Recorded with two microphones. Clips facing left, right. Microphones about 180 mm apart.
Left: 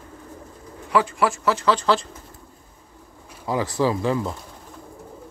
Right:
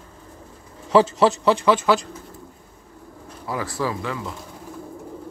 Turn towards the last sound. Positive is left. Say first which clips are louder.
# left 6 dB
turn(degrees=30)  # may be behind; listen again after turning